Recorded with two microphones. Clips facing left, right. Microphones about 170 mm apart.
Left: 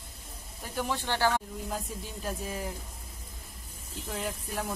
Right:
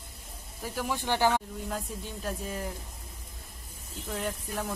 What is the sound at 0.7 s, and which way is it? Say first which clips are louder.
Speech: right 1 dB; 10° right (ahead or behind).